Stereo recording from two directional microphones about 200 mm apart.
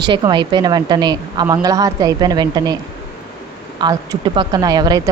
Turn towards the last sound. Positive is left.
turn(degrees=-20)  # may be behind; listen again after turning